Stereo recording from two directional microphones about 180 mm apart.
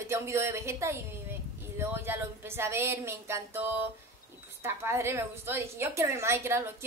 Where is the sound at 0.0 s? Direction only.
15° right (ahead or behind).